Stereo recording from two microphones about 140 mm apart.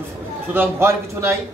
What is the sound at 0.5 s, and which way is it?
Speech, 15° right (ahead or behind).